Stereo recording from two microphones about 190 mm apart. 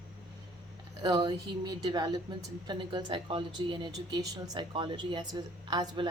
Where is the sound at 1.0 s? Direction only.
20° right (ahead or behind).